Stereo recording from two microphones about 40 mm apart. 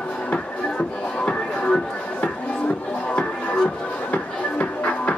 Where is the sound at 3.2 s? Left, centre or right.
Left.